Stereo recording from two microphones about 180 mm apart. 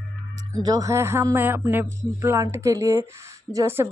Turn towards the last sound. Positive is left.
turn(degrees=-15)  # may be behind; listen again after turning